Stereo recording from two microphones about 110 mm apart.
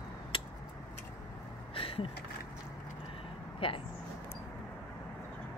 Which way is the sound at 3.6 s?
50° left (ahead or behind).